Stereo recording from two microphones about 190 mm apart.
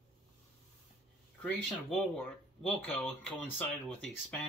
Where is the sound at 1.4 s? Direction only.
5° left (ahead or behind).